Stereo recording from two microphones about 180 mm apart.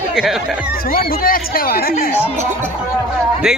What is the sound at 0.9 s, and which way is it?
Speech, 55° left (ahead or behind).